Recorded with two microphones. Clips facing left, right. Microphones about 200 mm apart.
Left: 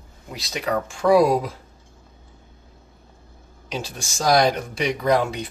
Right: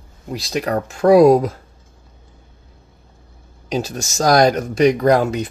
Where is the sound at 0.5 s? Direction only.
45° right (ahead or behind).